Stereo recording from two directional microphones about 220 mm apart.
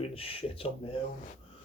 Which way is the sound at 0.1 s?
25° left (ahead or behind).